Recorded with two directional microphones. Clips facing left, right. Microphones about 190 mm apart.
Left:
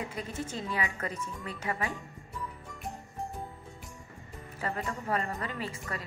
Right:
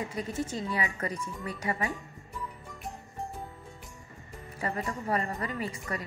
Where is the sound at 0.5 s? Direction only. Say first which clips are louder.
Right 2 dB; 5° right (ahead or behind).